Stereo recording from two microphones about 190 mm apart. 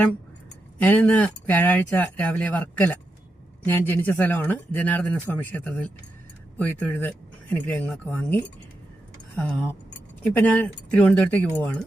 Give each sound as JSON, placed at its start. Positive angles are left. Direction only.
{"t": 0.8, "sound": "speech", "side_deg": 5}